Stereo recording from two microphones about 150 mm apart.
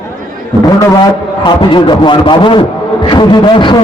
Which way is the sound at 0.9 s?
30° left (ahead or behind).